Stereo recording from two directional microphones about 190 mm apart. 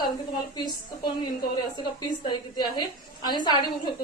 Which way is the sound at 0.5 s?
25° left (ahead or behind).